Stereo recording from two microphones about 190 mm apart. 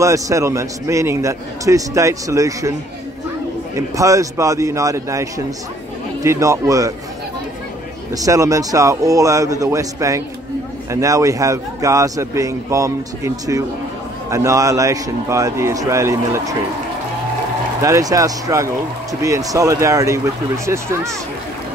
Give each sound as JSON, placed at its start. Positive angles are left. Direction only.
{"t": 0.0, "sound": "a man's voice", "side_deg": -15}
{"t": 3.7, "sound": "a man's voice", "side_deg": -15}
{"t": 8.1, "sound": "a man's voice", "side_deg": -20}
{"t": 17.8, "sound": "a man's voice", "side_deg": -15}